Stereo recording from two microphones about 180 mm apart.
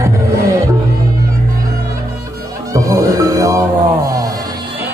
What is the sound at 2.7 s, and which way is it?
Music, 20° right (ahead or behind).